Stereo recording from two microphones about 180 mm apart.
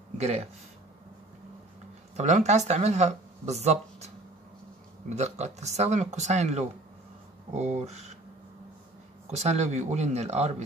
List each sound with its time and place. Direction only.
0.2 s speech: 40° right (ahead or behind)
2.1 s speech: 40° right (ahead or behind)
5.1 s speech: 40° right (ahead or behind)
9.3 s speech: 40° right (ahead or behind)